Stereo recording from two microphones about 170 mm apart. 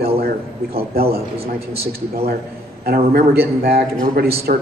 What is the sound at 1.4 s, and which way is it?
A man's voice, 65° right (ahead or behind).